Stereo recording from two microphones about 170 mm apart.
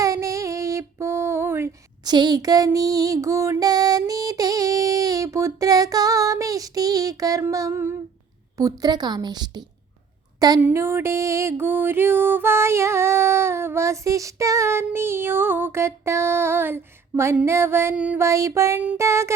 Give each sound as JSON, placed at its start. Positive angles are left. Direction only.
{"t": 0.0, "sound": "female singing", "side_deg": -20}
{"t": 2.0, "sound": "music", "side_deg": -25}
{"t": 10.6, "sound": "music", "side_deg": -15}